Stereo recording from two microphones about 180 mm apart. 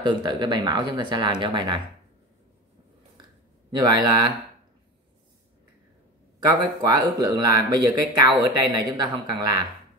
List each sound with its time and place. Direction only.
0.0 s speech: 25° right (ahead or behind)
3.7 s speech: 25° right (ahead or behind)
6.4 s speech: 20° right (ahead or behind)